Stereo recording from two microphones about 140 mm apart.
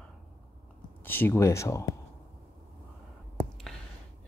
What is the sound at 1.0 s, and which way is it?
Speech, 15° left (ahead or behind).